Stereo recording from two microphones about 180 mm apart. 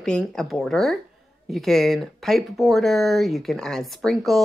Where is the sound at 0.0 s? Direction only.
5° left (ahead or behind).